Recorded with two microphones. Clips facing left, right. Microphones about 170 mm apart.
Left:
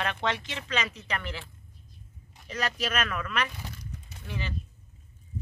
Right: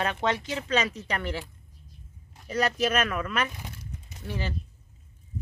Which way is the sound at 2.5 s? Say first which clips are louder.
Right 6 dB; 30° right (ahead or behind).